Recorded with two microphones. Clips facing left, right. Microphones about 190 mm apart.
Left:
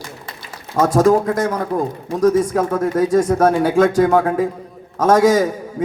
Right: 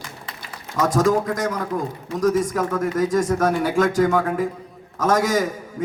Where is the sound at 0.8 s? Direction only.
55° left (ahead or behind).